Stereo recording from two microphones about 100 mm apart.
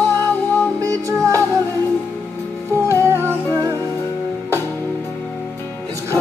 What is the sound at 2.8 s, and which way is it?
Humming, 30° right (ahead or behind).